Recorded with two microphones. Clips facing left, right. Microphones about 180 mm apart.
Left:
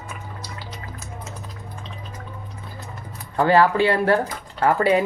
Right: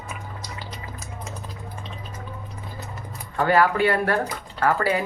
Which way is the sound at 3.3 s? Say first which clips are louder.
Left 3 dB; 30° left (ahead or behind).